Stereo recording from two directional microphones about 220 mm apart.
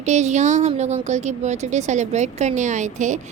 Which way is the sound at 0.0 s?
30° right (ahead or behind).